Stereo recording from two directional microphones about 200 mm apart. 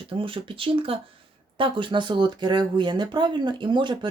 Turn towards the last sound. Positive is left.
turn(degrees=-25)  # may be behind; listen again after turning